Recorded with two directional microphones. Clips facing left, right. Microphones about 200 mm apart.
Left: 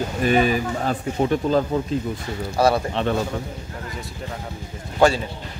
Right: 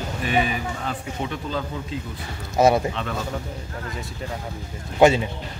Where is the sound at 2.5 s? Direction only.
20° right (ahead or behind).